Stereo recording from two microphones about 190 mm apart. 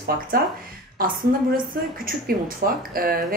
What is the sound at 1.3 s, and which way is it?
Speech, 50° right (ahead or behind).